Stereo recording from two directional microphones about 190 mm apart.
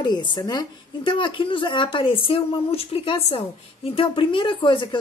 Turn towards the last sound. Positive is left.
turn(degrees=25)  # may be behind; listen again after turning